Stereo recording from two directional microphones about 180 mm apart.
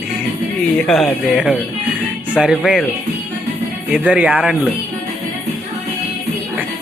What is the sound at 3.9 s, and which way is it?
Speech, 5° right (ahead or behind).